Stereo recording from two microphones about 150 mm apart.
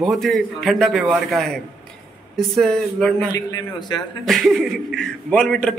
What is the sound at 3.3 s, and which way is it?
Speech, 25° left (ahead or behind).